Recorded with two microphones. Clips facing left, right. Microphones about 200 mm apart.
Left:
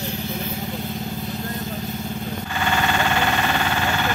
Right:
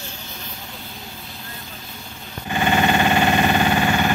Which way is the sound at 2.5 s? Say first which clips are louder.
Right 5 dB; 20° right (ahead or behind).